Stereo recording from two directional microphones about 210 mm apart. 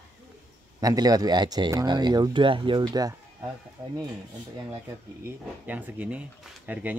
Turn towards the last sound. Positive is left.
turn(degrees=-5)  # may be behind; listen again after turning